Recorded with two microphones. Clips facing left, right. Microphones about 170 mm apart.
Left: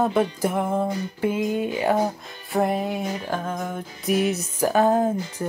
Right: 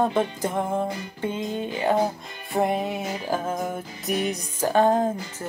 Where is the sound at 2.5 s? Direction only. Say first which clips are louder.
Left 1 dB; centre (ahead or behind).